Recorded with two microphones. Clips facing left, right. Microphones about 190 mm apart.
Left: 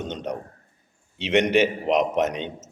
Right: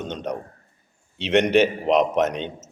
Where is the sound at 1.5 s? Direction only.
10° left (ahead or behind).